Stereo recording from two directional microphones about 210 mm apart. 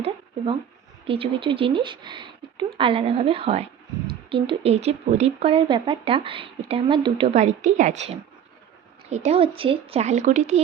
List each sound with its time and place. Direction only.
1.0 s speech: 25° right (ahead or behind)